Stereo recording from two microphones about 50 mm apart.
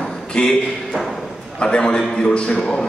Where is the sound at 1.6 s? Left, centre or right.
Centre.